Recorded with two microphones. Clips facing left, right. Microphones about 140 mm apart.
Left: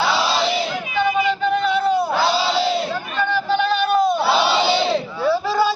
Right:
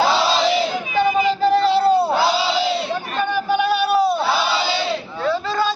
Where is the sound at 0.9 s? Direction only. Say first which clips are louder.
Right 2 dB; 35° right (ahead or behind).